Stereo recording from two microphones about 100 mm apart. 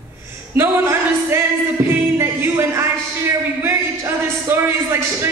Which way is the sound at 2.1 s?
25° right (ahead or behind).